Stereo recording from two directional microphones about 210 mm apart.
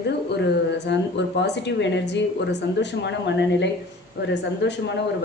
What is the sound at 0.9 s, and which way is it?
Speech, 55° left (ahead or behind).